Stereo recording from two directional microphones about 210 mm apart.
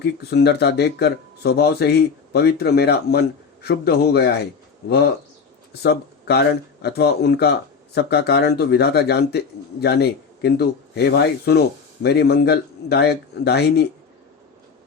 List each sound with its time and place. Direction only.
0.0 s speech: 50° left (ahead or behind)